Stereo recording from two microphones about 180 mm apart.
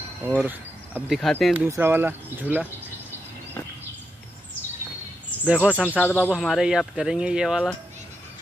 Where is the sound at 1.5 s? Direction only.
15° right (ahead or behind).